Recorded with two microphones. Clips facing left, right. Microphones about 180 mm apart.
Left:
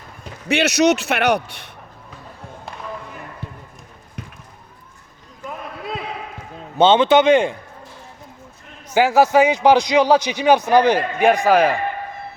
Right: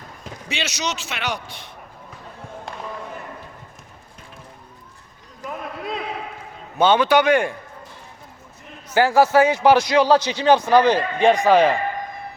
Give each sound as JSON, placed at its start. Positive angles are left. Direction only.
{"t": 0.4, "sound": "a man's voice", "side_deg": 60}
{"t": 6.7, "sound": "a man's voice", "side_deg": 25}
{"t": 8.9, "sound": "a man's voice", "side_deg": 15}